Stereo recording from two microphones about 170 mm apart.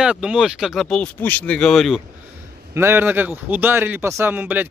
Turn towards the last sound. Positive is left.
turn(degrees=-10)  # may be behind; listen again after turning